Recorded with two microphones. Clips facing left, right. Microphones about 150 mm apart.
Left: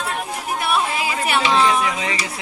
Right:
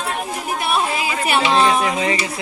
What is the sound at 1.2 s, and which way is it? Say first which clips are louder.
Speech: right 2 dB; 25° right (ahead or behind).